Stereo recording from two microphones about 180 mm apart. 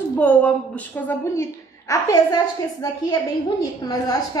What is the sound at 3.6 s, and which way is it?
Speech, 20° left (ahead or behind).